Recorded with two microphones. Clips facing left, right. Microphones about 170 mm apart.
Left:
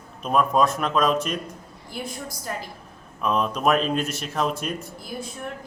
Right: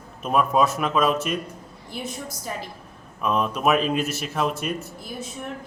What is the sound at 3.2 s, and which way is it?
Speech, 5° right (ahead or behind).